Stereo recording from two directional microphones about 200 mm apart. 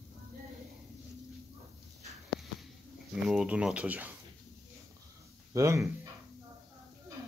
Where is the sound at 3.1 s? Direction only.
5° right (ahead or behind).